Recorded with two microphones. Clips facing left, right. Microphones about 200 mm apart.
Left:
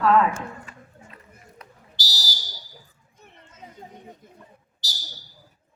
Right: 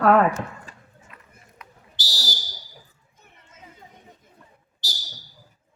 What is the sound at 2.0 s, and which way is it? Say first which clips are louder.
Fire alarm: right 2 dB; 55° right (ahead or behind).